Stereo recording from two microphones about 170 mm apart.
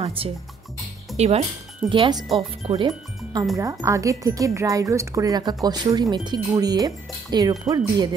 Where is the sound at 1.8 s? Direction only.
30° right (ahead or behind).